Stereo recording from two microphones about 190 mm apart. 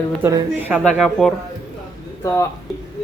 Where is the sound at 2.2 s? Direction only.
15° left (ahead or behind).